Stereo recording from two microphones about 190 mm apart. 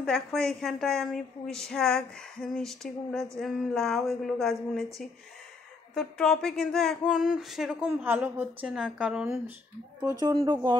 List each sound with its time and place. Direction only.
0.0 s a woman's voice: 5° left (ahead or behind)
5.9 s a woman's voice: centre (ahead or behind)
10.4 s speech: 25° right (ahead or behind)